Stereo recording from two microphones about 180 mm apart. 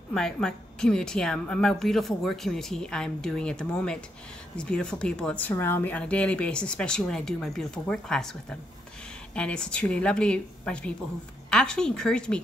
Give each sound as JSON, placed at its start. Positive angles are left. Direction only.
{"t": 0.1, "sound": "speech", "side_deg": 0}